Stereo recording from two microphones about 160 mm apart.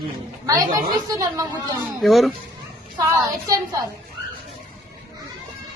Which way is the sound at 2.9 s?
20° right (ahead or behind).